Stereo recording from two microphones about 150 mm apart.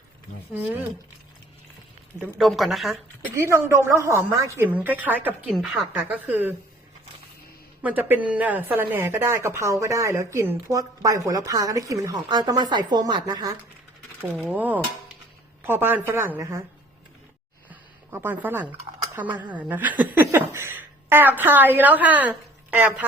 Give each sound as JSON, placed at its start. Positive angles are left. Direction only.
{"t": 2.4, "sound": "a woman's voice", "side_deg": 0}
{"t": 3.3, "sound": "speech", "side_deg": -20}
{"t": 7.8, "sound": "speech", "side_deg": -10}
{"t": 14.5, "sound": "speech", "side_deg": -10}
{"t": 17.7, "sound": "a sound", "side_deg": -15}
{"t": 19.4, "sound": "speech", "side_deg": -10}